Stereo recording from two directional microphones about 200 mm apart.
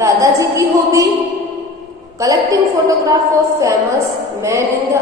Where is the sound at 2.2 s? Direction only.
15° right (ahead or behind).